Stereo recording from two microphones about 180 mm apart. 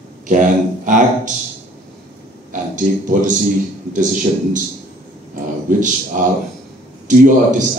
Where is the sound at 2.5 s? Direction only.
45° right (ahead or behind).